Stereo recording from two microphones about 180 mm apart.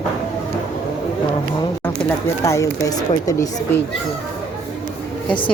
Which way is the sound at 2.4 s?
15° left (ahead or behind).